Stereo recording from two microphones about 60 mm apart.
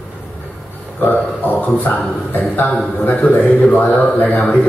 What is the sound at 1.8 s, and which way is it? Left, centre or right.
A man's voice, left.